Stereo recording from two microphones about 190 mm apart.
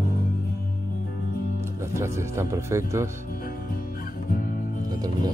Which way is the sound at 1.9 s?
15° right (ahead or behind).